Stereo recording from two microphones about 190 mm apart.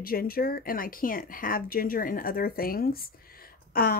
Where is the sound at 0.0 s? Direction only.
50° left (ahead or behind).